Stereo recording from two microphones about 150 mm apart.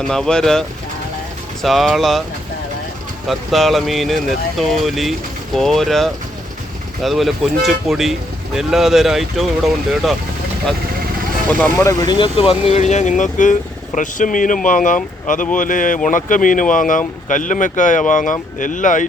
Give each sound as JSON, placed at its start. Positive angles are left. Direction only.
{"t": 0.0, "sound": "speech", "side_deg": 5}
{"t": 1.6, "sound": "speech", "side_deg": 0}
{"t": 3.2, "sound": "speech", "side_deg": 0}
{"t": 11.8, "sound": "speech", "side_deg": 20}
{"t": 12.1, "sound": "speech", "side_deg": 35}